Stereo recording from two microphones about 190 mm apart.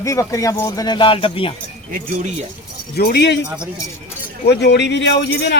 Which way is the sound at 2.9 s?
60° left (ahead or behind).